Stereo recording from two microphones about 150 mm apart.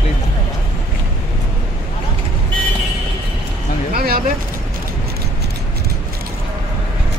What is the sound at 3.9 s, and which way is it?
Speech, 85° right.